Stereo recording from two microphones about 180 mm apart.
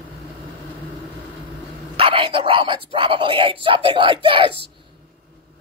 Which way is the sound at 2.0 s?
30° right (ahead or behind).